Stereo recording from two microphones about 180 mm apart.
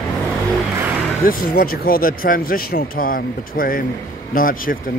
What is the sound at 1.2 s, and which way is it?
Speech, 50° left (ahead or behind).